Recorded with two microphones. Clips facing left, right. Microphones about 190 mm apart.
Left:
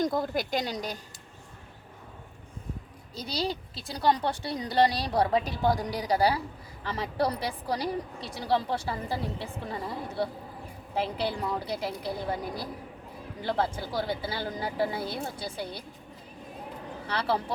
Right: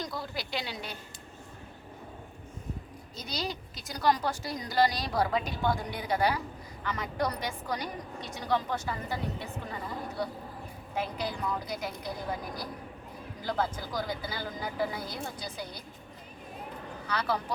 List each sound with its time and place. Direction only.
0.0 s a woman's voice: 50° left (ahead or behind)
3.2 s a woman's voice: 30° left (ahead or behind)
17.1 s speech: 30° left (ahead or behind)